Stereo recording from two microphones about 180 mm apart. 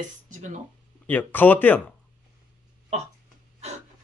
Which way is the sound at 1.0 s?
10° left (ahead or behind).